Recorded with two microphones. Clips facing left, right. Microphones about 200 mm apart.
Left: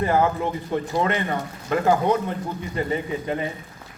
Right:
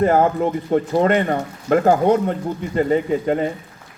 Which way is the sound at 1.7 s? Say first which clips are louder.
Right 5 dB; 45° right (ahead or behind).